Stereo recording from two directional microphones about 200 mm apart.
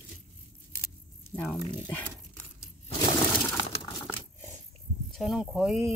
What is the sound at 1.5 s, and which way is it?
Speech, 20° left (ahead or behind).